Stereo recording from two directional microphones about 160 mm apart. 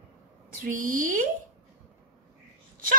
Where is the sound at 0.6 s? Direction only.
60° right (ahead or behind).